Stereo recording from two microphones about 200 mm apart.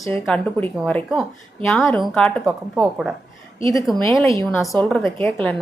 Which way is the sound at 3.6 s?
15° left (ahead or behind).